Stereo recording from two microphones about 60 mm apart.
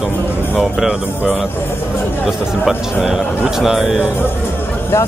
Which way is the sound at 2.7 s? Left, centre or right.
Centre.